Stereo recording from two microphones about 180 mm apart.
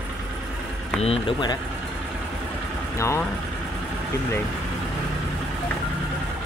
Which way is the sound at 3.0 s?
15° left (ahead or behind).